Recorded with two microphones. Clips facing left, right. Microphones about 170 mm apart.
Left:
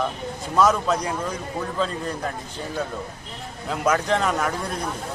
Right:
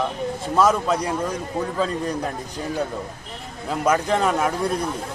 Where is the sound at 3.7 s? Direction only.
5° right (ahead or behind).